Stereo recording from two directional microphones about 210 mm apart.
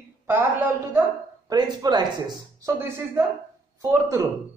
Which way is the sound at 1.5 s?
20° right (ahead or behind).